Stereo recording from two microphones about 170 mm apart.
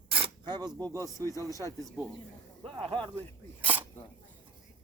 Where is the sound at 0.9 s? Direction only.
15° left (ahead or behind).